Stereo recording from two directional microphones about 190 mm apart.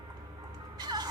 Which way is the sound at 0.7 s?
20° right (ahead or behind).